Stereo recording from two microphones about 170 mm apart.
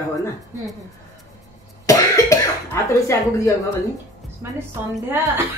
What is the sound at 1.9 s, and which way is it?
Cough, 20° left (ahead or behind).